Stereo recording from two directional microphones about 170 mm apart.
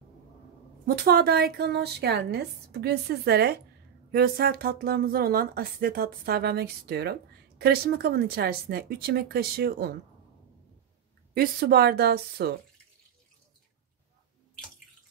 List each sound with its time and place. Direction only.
0.8 s a woman's voice: 60° right (ahead or behind)
4.1 s speech: 60° right (ahead or behind)
11.3 s a woman's voice: 65° right (ahead or behind)